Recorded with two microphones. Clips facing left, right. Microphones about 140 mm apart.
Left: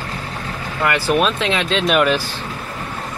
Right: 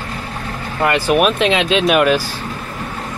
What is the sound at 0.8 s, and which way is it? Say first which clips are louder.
Speech: right 3 dB; 20° right (ahead or behind).